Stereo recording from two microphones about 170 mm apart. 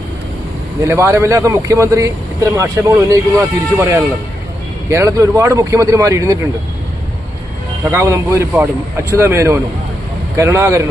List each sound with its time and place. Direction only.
0.9 s a man's voice: 15° right (ahead or behind)
7.9 s speech: 15° right (ahead or behind)